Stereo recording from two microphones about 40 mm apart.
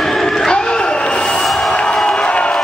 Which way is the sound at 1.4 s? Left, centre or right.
Centre.